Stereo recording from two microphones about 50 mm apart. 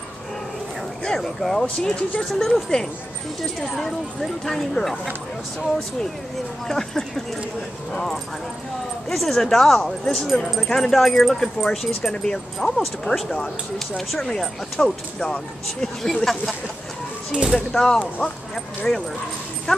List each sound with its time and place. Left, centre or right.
1.4 s speech: centre
2.3 s speech: centre
6.7 s speech: centre
16.0 s speech: centre
17.3 s speech: centre
17.7 s speech: centre